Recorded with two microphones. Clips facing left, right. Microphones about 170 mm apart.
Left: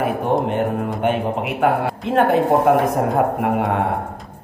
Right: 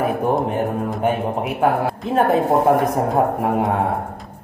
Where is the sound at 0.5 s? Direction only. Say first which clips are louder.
Left 1 dB; 70° left (ahead or behind).